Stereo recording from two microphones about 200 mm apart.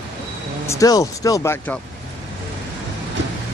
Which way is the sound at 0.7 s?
15° left (ahead or behind).